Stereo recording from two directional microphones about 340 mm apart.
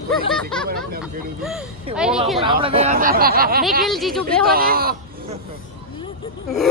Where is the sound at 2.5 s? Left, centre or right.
Centre.